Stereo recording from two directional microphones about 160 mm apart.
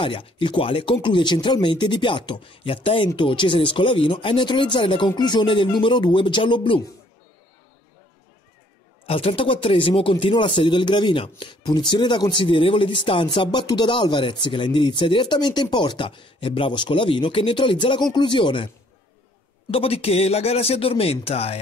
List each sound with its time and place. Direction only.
0.0 s speech: 30° left (ahead or behind)
9.0 s speech: 35° left (ahead or behind)
19.7 s speech: 35° left (ahead or behind)